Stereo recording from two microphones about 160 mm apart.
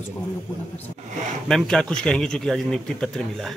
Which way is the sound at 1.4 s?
5° left (ahead or behind).